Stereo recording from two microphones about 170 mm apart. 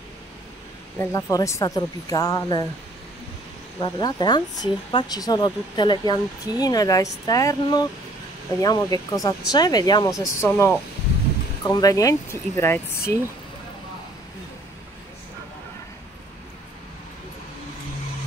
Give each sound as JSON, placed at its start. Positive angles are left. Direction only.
{"t": 0.9, "sound": "speech", "side_deg": 20}
{"t": 3.8, "sound": "speech", "side_deg": 25}